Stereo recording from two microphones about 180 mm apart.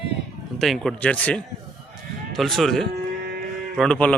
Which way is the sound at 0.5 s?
Centre (ahead or behind).